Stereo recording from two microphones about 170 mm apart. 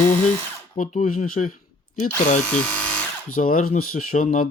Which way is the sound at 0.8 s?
50° left (ahead or behind).